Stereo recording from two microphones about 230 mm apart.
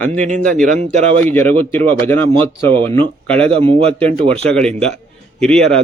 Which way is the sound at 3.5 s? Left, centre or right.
Right.